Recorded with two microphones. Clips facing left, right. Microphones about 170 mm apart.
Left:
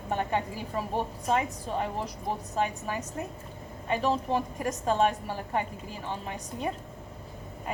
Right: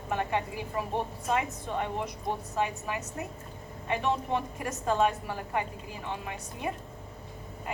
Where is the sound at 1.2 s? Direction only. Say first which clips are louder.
Left 2 dB; 30° left (ahead or behind).